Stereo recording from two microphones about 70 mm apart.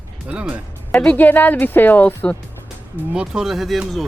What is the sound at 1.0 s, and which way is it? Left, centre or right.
Speech, left.